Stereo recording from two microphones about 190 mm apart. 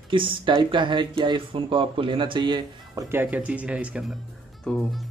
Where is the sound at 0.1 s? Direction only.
25° right (ahead or behind).